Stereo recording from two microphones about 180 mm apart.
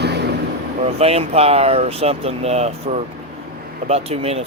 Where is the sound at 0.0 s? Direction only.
70° right (ahead or behind).